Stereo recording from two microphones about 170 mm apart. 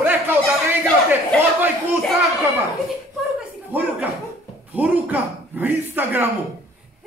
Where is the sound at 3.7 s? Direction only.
10° right (ahead or behind).